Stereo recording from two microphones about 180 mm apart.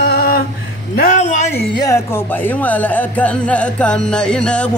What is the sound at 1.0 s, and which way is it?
Music, 45° left (ahead or behind).